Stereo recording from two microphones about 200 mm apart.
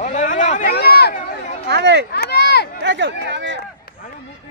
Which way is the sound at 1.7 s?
55° right (ahead or behind).